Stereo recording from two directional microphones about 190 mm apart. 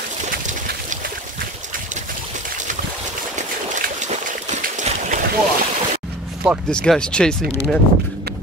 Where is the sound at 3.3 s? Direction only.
40° right (ahead or behind).